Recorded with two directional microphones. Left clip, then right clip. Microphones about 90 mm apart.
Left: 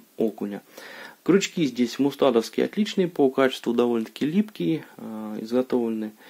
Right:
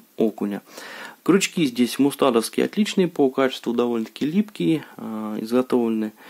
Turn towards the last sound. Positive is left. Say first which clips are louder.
# right 3 dB
turn(degrees=-40)  # may be behind; listen again after turning